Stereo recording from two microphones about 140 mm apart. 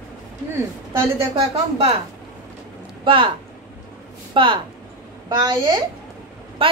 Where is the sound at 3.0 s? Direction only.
40° right (ahead or behind).